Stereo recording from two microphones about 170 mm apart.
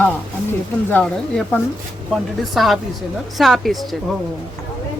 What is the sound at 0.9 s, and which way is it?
Speech, 10° left (ahead or behind).